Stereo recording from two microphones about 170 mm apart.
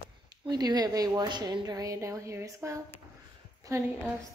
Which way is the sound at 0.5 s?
25° right (ahead or behind).